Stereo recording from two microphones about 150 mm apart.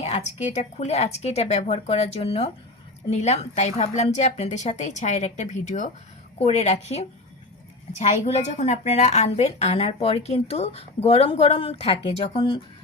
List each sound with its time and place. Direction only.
0.0 s a woman's voice: 45° left (ahead or behind)